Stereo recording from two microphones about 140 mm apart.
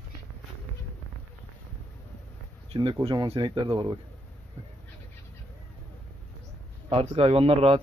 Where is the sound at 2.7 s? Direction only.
40° right (ahead or behind).